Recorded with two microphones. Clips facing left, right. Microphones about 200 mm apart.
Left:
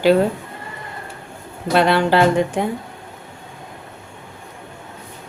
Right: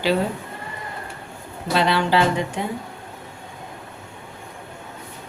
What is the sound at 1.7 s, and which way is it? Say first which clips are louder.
Speech: left 4 dB; 50° left (ahead or behind).